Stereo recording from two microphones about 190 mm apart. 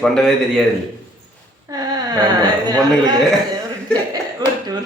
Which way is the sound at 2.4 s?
20° right (ahead or behind).